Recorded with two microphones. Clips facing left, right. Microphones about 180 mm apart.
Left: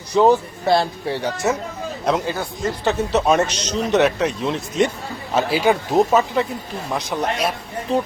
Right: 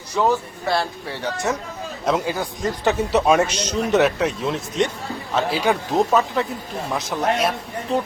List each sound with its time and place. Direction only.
0.2 s speech: 20° left (ahead or behind)
1.5 s speech: 5° left (ahead or behind)
2.0 s speech: 5° right (ahead or behind)